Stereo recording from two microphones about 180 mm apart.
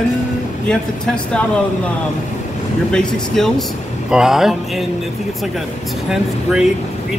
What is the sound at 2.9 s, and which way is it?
Speech, 5° left (ahead or behind).